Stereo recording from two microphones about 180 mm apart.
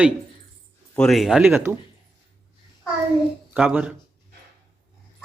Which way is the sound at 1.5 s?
10° right (ahead or behind).